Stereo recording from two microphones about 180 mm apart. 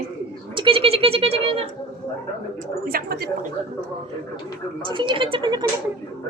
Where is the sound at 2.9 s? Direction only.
60° right (ahead or behind).